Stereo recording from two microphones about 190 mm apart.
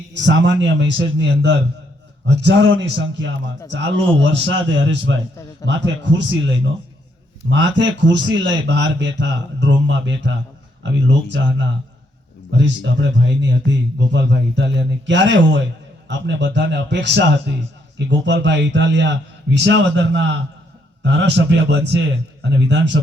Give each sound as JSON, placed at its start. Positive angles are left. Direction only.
{"t": 0.2, "sound": "a man's voice", "side_deg": -70}
{"t": 7.5, "sound": "a man's voice", "side_deg": -70}